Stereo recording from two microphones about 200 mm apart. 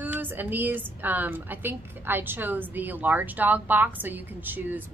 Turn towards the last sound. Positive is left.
turn(degrees=-10)  # may be behind; listen again after turning